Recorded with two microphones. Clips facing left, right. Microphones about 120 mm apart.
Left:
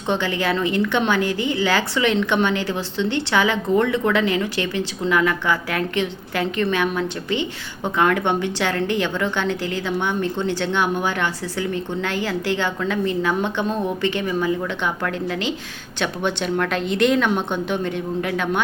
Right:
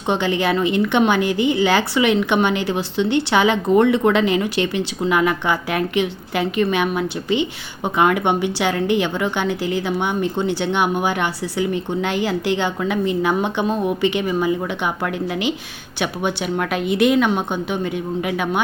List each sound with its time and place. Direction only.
0.1 s a woman's voice: 15° right (ahead or behind)